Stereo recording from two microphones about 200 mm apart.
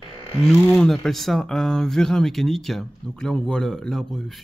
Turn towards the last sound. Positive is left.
turn(degrees=0)  # may be behind; listen again after turning